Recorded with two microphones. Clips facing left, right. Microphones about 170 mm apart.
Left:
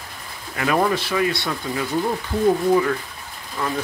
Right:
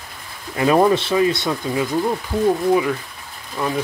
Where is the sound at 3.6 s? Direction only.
15° right (ahead or behind).